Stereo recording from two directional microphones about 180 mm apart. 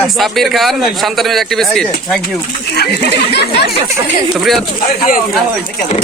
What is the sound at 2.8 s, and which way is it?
Speech, 65° left (ahead or behind).